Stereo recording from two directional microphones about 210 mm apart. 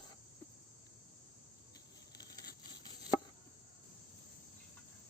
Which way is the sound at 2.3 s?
20° left (ahead or behind).